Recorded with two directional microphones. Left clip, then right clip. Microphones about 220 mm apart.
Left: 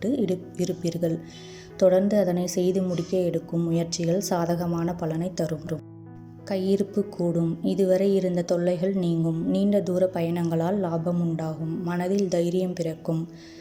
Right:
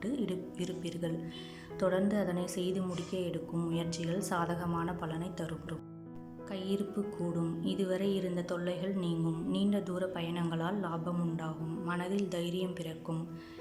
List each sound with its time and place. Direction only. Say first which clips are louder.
0.0 s a woman's voice: left 10 dB; 20° left (ahead or behind)